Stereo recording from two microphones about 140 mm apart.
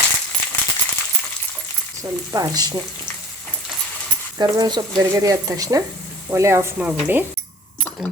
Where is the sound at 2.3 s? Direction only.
25° right (ahead or behind).